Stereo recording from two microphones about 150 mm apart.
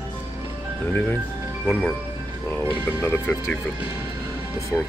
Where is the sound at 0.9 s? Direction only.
10° left (ahead or behind).